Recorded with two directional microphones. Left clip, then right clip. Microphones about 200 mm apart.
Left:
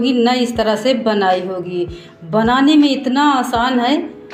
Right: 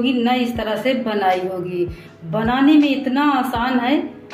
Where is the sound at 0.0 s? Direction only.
35° left (ahead or behind).